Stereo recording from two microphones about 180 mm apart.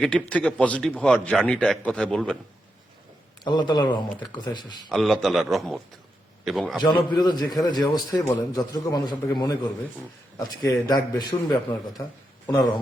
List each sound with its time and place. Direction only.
0.0 s a man's voice: 5° left (ahead or behind)
3.4 s a man's voice: 25° left (ahead or behind)
4.9 s a man's voice: centre (ahead or behind)
6.8 s a man's voice: 25° left (ahead or behind)
10.6 s a man's voice: 20° left (ahead or behind)